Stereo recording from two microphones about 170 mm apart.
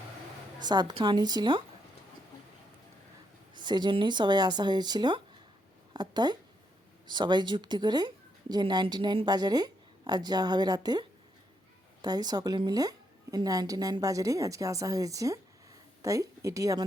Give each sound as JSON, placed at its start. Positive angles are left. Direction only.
{"t": 0.6, "sound": "a woman's voice", "side_deg": -25}
{"t": 3.5, "sound": "a woman's voice", "side_deg": -25}
{"t": 12.0, "sound": "a woman's voice", "side_deg": -25}